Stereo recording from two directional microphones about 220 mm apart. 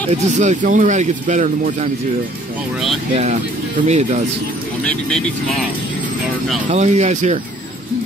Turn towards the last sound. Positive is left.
turn(degrees=-30)  # may be behind; listen again after turning